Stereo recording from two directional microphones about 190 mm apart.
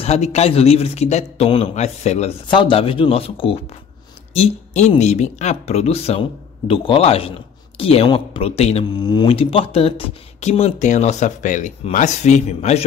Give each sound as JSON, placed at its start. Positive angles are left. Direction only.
{"t": 0.0, "sound": "a man's voice", "side_deg": 35}